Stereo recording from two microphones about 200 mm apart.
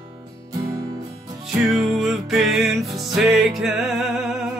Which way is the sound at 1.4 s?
Centre (ahead or behind).